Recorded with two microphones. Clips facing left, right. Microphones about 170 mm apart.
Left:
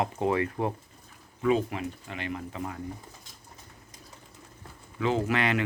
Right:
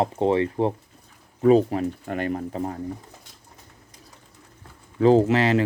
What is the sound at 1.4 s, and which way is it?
Speech, 40° right (ahead or behind).